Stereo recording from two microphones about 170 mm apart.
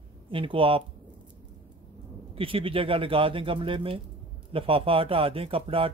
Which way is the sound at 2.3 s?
30° right (ahead or behind).